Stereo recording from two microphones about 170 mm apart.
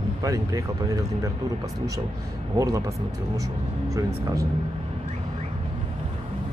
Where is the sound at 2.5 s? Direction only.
20° right (ahead or behind).